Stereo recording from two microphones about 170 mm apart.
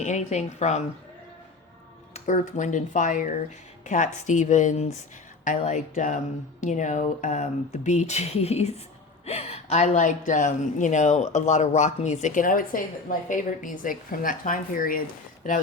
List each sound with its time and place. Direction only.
0.0 s speech: 45° left (ahead or behind)
2.1 s speech: 45° left (ahead or behind)